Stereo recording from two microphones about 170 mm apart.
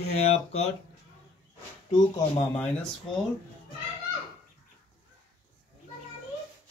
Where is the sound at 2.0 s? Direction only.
20° left (ahead or behind).